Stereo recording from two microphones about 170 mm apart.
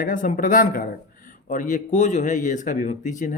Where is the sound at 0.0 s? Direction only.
50° left (ahead or behind).